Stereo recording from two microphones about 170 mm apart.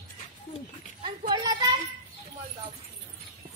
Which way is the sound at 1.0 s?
25° right (ahead or behind).